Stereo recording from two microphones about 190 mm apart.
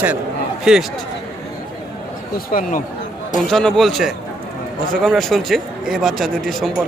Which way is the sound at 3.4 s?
Centre (ahead or behind).